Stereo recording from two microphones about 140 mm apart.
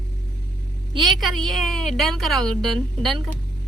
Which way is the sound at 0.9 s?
Centre (ahead or behind).